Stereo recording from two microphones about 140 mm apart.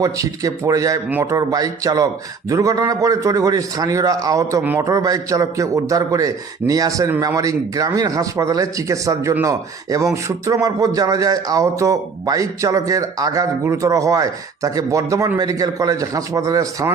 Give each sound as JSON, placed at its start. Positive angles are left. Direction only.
{"t": 0.0, "sound": "speech", "side_deg": -25}